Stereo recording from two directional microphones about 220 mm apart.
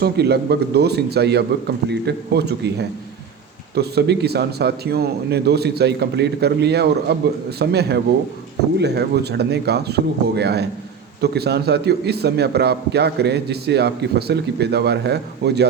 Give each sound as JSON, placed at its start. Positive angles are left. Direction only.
{"t": 0.0, "sound": "a man's voice", "side_deg": -45}